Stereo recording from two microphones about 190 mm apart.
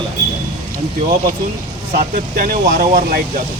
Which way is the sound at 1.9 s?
50° right (ahead or behind).